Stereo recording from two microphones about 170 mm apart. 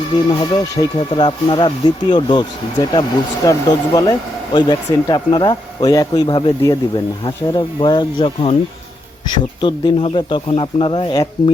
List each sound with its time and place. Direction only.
0.8 s speech: 30° left (ahead or behind)
9.6 s speech: 30° left (ahead or behind)